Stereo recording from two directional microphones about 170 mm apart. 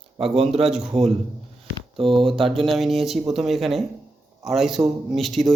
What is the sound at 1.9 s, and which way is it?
Speech, 30° right (ahead or behind).